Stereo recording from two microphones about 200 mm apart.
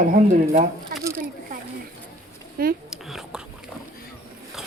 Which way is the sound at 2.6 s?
45° right (ahead or behind).